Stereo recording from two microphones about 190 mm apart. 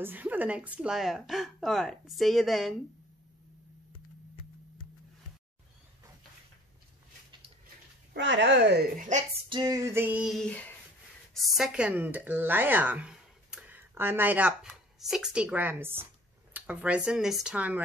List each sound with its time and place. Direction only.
0.0 s speech: 10° right (ahead or behind)
8.1 s speech: 70° right (ahead or behind)
8.9 s a woman's voice: 45° right (ahead or behind)
9.5 s speech: 20° right (ahead or behind)